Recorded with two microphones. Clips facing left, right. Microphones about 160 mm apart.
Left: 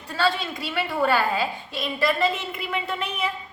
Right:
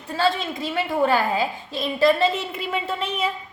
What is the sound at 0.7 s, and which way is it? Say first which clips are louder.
A woman's voice: right 2 dB; 20° right (ahead or behind).